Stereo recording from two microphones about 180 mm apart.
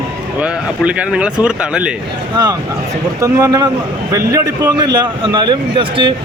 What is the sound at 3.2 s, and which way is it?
Speech, 15° right (ahead or behind).